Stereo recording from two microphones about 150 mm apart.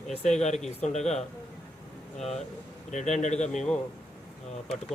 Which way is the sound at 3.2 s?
50° left (ahead or behind).